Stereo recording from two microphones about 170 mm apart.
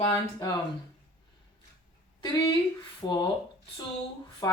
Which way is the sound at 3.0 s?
25° left (ahead or behind).